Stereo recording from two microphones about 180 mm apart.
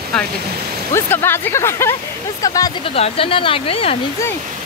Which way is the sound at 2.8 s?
30° left (ahead or behind).